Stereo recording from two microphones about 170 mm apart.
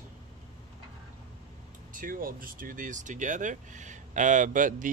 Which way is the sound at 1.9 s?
55° right (ahead or behind).